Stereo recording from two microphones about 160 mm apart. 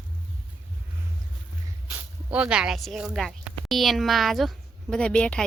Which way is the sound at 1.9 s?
5° right (ahead or behind).